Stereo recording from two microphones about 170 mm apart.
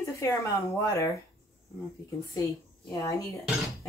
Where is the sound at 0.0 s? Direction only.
15° left (ahead or behind).